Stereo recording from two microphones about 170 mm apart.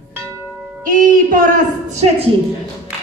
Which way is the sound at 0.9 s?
50° right (ahead or behind).